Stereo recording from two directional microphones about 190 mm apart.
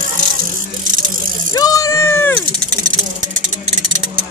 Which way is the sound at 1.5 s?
20° left (ahead or behind).